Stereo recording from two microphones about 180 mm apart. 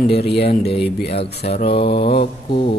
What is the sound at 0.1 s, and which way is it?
Speech, 65° left (ahead or behind).